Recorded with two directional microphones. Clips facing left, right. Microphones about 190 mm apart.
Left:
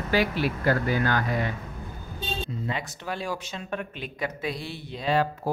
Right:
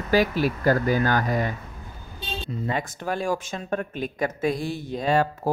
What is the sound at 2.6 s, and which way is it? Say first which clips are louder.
Speech: right 4 dB; 50° right (ahead or behind).